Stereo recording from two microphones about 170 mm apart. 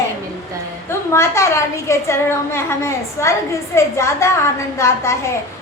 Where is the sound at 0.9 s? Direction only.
15° left (ahead or behind).